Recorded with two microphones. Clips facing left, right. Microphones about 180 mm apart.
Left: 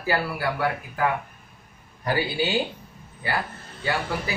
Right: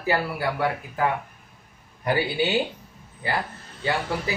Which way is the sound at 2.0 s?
20° right (ahead or behind).